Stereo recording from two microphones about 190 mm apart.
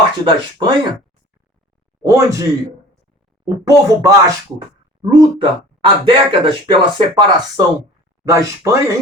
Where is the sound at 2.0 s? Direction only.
15° right (ahead or behind).